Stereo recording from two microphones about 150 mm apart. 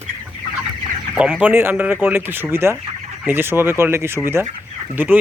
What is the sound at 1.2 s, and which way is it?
Speech, 10° right (ahead or behind).